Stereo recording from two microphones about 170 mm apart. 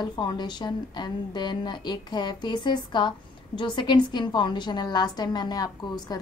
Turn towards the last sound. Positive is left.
turn(degrees=25)  # may be behind; listen again after turning